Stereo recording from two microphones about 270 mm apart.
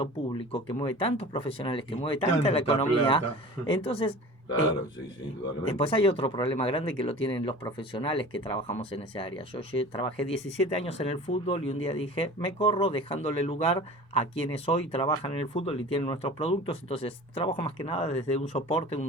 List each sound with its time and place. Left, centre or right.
0.0 s speech: centre
5.7 s speech: left